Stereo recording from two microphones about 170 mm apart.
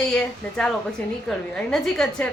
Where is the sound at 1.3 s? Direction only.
5° left (ahead or behind).